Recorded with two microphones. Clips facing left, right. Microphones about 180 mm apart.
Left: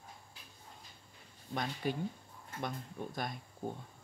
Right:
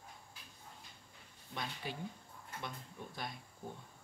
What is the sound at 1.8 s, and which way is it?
Speech, 50° left (ahead or behind).